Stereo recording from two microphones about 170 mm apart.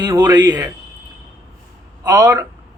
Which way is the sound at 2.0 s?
20° right (ahead or behind).